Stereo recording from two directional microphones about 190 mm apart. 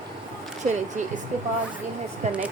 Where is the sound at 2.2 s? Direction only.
40° right (ahead or behind).